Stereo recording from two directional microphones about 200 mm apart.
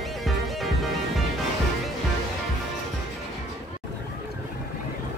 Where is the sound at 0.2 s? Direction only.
Centre (ahead or behind).